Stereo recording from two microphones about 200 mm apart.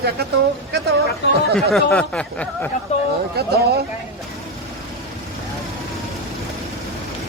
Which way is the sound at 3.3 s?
50° right (ahead or behind).